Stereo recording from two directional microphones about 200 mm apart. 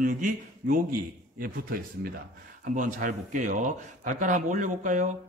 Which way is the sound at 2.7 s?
40° right (ahead or behind).